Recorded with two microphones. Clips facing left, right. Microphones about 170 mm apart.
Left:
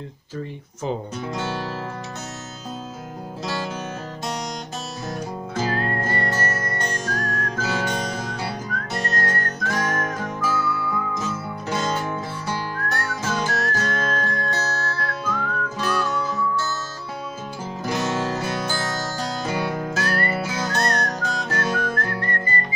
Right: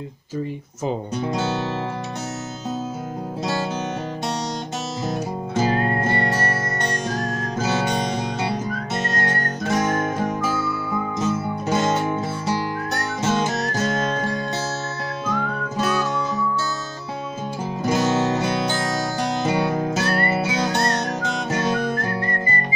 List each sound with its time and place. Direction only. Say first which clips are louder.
1.2 s music: right 7 dB; 20° right (ahead or behind)
5.0 s music: right 3 dB; 25° right (ahead or behind)
7.1 s whistling: right 2 dB; 20° right (ahead or behind)
11.7 s music: right 4 dB; 25° right (ahead or behind)
17.8 s music: right 5 dB; 20° right (ahead or behind)